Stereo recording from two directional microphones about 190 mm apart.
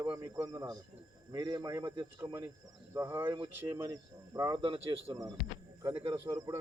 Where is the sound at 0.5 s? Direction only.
25° right (ahead or behind).